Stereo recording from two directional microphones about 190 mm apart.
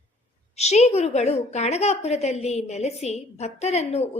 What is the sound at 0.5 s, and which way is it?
A woman's voice, 35° left (ahead or behind).